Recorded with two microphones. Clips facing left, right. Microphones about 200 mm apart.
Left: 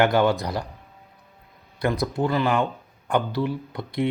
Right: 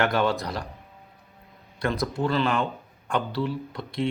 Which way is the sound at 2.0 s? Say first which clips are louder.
Left 1 dB; 15° left (ahead or behind).